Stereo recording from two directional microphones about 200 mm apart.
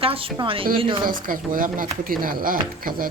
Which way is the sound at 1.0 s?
45° right (ahead or behind).